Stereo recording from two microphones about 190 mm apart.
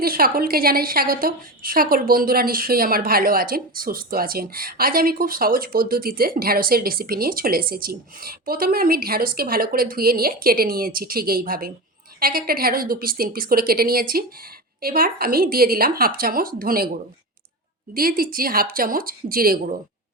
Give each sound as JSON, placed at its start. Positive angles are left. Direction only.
{"t": 0.0, "sound": "a woman's voice", "side_deg": -50}
{"t": 17.9, "sound": "a woman's voice", "side_deg": -50}